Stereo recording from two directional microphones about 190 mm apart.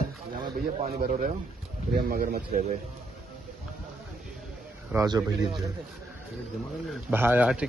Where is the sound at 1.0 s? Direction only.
45° right (ahead or behind).